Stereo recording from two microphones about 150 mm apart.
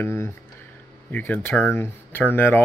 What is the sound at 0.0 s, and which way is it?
Speech, 15° left (ahead or behind).